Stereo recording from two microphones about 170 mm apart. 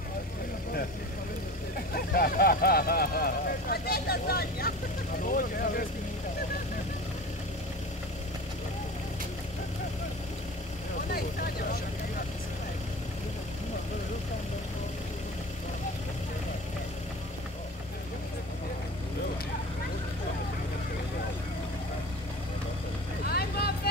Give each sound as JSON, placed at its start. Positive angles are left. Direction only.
{"t": 2.0, "sound": "speech", "side_deg": 60}
{"t": 11.1, "sound": "vehicle", "side_deg": 65}
{"t": 23.2, "sound": "vehicle", "side_deg": 65}